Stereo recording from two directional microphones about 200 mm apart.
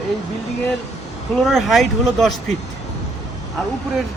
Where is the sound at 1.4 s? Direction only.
Centre (ahead or behind).